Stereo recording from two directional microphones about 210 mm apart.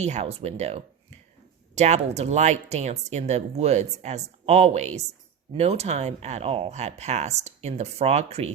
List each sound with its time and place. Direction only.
0.0 s speech: 30° right (ahead or behind)